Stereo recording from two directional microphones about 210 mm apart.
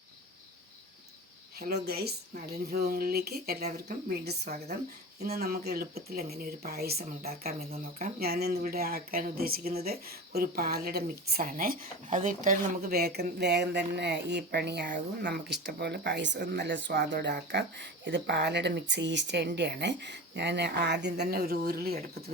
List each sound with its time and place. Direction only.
1.5 s speech: 50° right (ahead or behind)